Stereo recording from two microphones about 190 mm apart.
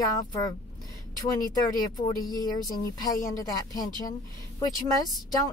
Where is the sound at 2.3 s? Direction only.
20° left (ahead or behind).